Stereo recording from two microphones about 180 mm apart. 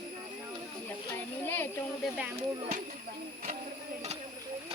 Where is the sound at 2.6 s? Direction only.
40° right (ahead or behind).